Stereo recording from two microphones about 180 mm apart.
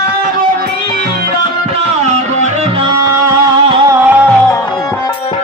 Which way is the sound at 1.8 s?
40° right (ahead or behind).